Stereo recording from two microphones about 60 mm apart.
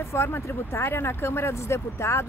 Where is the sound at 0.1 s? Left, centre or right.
Left.